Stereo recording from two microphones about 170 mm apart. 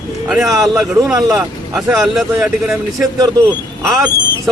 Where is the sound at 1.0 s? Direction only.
20° right (ahead or behind).